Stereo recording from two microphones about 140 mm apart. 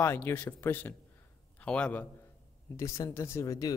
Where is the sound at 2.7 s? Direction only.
25° left (ahead or behind).